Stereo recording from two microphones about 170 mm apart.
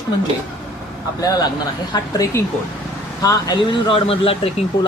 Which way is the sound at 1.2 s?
20° left (ahead or behind).